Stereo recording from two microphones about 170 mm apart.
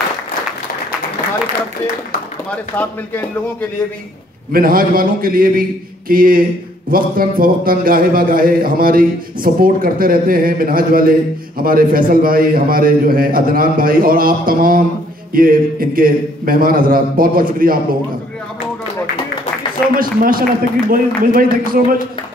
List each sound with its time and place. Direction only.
2.5 s speech: 10° left (ahead or behind)
4.5 s a man's voice: 60° right (ahead or behind)
20.0 s a man's voice: 55° right (ahead or behind)